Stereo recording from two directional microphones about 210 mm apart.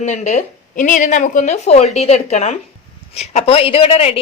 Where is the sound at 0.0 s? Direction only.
35° left (ahead or behind).